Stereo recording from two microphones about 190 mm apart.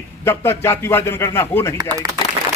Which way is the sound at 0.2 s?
10° left (ahead or behind).